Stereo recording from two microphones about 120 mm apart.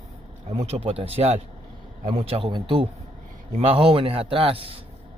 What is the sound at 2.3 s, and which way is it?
Speech, 45° right (ahead or behind).